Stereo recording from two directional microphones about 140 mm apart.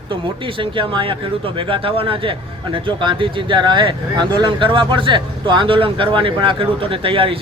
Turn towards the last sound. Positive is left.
turn(degrees=-40)  # may be behind; listen again after turning